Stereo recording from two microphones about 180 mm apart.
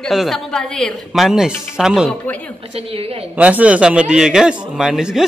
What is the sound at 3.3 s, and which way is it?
A woman's voice, 5° right (ahead or behind).